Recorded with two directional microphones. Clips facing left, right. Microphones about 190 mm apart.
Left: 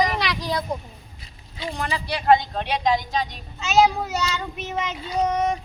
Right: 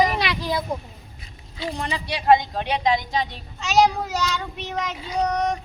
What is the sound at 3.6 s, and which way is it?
Speech, centre (ahead or behind).